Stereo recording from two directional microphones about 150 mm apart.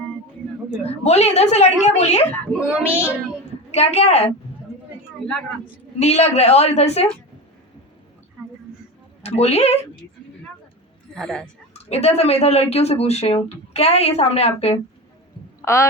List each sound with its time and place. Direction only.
0.7 s speech: 45° left (ahead or behind)
2.6 s speech: 5° right (ahead or behind)
3.7 s speech: 45° left (ahead or behind)
6.0 s speech: 45° left (ahead or behind)
9.2 s speech: 45° left (ahead or behind)
11.1 s speech: 5° left (ahead or behind)
11.7 s speech: 45° left (ahead or behind)
15.6 s speech: 20° left (ahead or behind)